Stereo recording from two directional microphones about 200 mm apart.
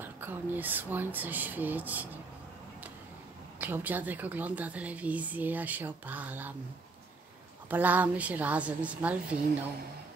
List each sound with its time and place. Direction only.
0.0 s a woman's voice: 10° right (ahead or behind)
3.5 s a woman's voice: 10° right (ahead or behind)
7.7 s a woman's voice: 10° right (ahead or behind)